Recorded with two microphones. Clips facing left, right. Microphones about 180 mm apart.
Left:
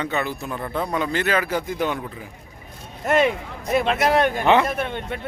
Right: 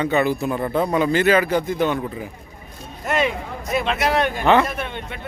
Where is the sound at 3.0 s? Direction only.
50° left (ahead or behind).